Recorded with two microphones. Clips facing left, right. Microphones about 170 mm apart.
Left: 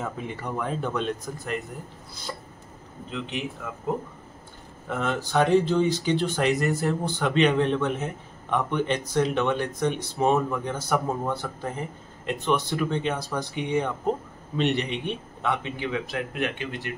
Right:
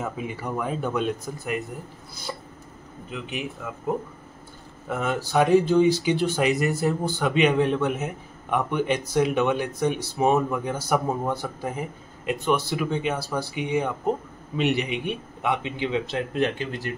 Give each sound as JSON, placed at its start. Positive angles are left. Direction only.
{"t": 0.0, "sound": "speech", "side_deg": -5}
{"t": 2.3, "sound": "a sound", "side_deg": -10}
{"t": 3.1, "sound": "speech", "side_deg": -5}
{"t": 4.8, "sound": "a man's voice", "side_deg": -5}